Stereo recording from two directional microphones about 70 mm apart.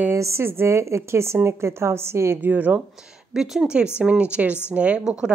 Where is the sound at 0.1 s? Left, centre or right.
Right.